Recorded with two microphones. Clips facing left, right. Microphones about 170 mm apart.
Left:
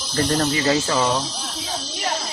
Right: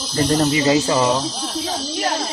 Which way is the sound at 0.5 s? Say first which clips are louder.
Right 4 dB; 15° right (ahead or behind).